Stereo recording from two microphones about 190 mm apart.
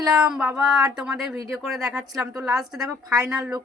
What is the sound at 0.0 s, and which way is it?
Speech, 5° right (ahead or behind).